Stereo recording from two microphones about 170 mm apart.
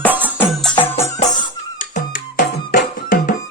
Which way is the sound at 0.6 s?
10° left (ahead or behind).